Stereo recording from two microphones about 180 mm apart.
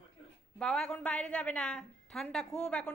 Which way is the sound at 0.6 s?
Centre (ahead or behind).